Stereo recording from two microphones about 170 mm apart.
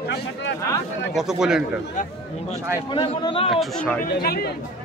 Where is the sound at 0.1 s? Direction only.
90° left.